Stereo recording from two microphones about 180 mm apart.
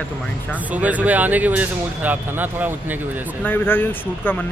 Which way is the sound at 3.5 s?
10° left (ahead or behind).